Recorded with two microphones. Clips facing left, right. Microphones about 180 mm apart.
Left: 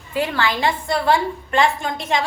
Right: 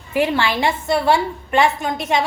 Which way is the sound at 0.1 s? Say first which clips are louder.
Right 3 dB; 25° right (ahead or behind).